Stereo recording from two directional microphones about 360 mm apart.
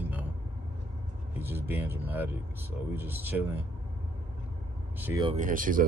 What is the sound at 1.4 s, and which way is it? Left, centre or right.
A woman's voice, centre.